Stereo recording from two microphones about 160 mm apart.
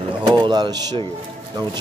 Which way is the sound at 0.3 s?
25° right (ahead or behind).